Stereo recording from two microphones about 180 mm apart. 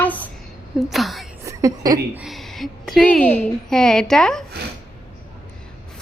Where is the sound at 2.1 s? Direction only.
Centre (ahead or behind).